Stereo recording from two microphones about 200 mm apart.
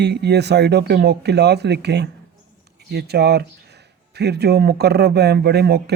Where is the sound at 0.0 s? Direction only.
55° right (ahead or behind).